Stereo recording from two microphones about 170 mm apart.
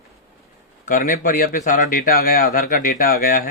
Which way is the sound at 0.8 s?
50° left (ahead or behind).